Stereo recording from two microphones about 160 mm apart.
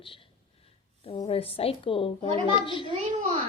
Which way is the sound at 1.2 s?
35° left (ahead or behind).